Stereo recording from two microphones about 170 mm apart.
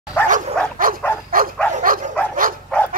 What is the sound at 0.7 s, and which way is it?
Dog, 55° right (ahead or behind).